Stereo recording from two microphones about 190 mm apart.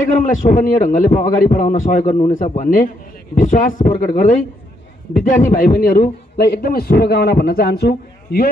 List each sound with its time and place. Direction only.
0.2 s a man's voice: 45° left (ahead or behind)